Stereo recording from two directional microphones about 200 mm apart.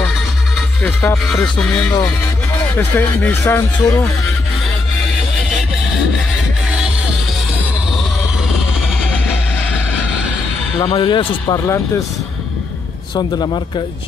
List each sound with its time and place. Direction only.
0.6 s speech: 5° left (ahead or behind)
10.8 s speech: 25° left (ahead or behind)
13.1 s speech: 25° left (ahead or behind)